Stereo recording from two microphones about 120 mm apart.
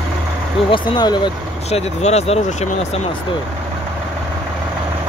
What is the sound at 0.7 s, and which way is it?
Speech, 40° left (ahead or behind).